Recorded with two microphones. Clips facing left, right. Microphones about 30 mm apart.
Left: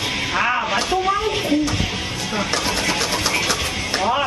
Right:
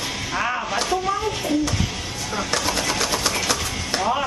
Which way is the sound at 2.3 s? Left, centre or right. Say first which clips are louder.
Left 1 dB; centre.